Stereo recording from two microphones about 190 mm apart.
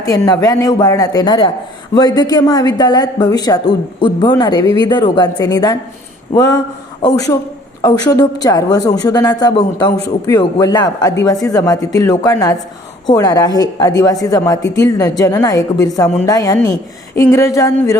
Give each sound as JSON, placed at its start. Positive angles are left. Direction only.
{"t": 0.0, "sound": "a woman's voice", "side_deg": 20}
{"t": 4.6, "sound": "speech", "side_deg": -30}
{"t": 4.9, "sound": "a woman's voice", "side_deg": 20}